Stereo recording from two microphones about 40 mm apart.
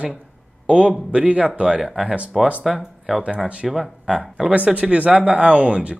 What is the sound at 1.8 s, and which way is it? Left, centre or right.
Speech, centre.